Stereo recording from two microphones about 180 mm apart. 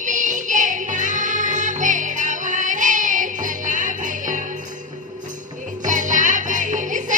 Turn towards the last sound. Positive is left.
turn(degrees=-45)  # may be behind; listen again after turning